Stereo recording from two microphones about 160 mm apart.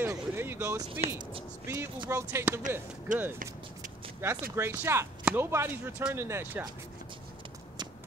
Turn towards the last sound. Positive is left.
turn(degrees=-15)  # may be behind; listen again after turning